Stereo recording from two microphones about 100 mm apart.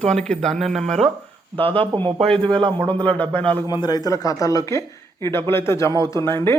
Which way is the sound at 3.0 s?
15° left (ahead or behind).